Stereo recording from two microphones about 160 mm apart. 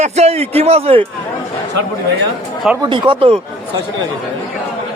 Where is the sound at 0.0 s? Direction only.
40° right (ahead or behind).